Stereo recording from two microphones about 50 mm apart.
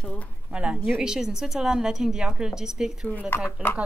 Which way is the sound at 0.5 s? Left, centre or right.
Right.